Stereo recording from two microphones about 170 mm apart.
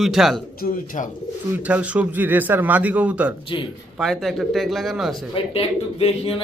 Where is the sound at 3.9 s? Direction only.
Centre (ahead or behind).